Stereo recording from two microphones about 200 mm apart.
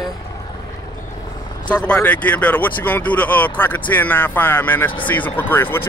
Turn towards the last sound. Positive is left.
turn(degrees=10)  # may be behind; listen again after turning